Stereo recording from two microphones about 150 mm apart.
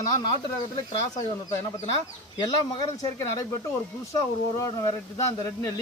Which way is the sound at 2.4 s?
25° left (ahead or behind).